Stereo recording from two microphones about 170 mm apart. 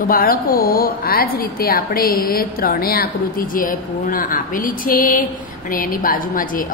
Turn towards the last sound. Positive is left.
turn(degrees=55)  # may be behind; listen again after turning